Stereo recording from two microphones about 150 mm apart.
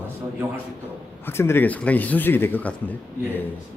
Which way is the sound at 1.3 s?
15° left (ahead or behind).